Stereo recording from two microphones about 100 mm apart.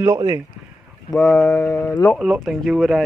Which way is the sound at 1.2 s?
30° left (ahead or behind).